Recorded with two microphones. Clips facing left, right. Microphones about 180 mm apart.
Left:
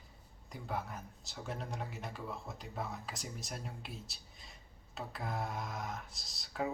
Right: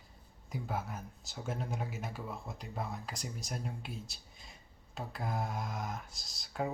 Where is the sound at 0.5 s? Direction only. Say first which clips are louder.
Right 2 dB; centre (ahead or behind).